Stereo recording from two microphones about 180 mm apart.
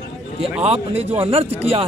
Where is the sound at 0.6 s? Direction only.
35° right (ahead or behind).